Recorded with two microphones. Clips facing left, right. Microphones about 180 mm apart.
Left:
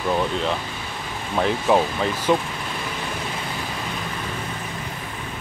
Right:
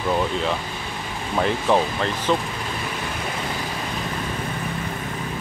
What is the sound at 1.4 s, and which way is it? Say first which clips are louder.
Speech: left 1 dB; 5° left (ahead or behind).